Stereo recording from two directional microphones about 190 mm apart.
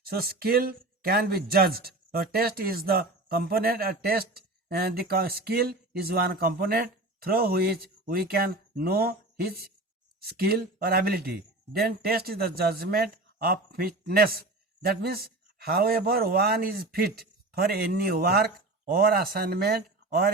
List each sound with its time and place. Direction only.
0.1 s speech: 55° right (ahead or behind)